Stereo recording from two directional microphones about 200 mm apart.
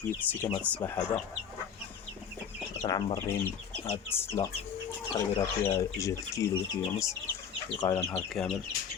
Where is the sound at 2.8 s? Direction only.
20° left (ahead or behind).